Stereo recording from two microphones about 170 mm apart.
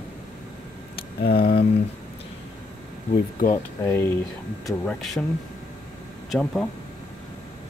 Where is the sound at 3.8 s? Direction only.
15° left (ahead or behind).